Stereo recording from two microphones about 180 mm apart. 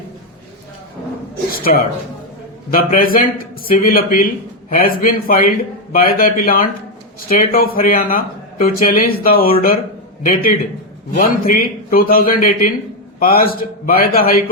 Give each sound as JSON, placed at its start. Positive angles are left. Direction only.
{"t": 1.5, "sound": "a man's voice", "side_deg": 55}
{"t": 11.1, "sound": "a man's voice", "side_deg": 50}